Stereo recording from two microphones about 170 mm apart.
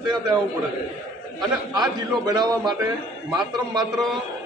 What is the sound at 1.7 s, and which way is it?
A man's voice, 25° right (ahead or behind).